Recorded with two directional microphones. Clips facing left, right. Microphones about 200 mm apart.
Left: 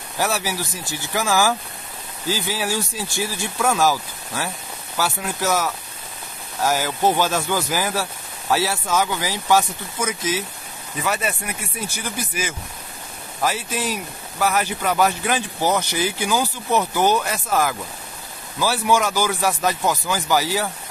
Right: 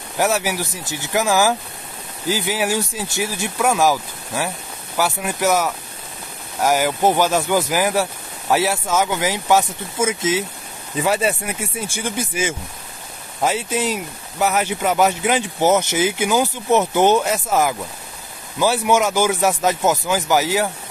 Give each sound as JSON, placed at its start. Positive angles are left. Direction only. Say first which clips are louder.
{"t": 0.2, "sound": "speech", "louder": "right 4 dB", "side_deg": -15}